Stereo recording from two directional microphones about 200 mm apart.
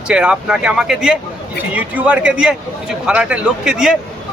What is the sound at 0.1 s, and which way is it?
Speech, 5° right (ahead or behind).